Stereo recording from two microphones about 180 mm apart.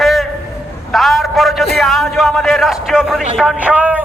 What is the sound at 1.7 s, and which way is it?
A man's voice, centre (ahead or behind).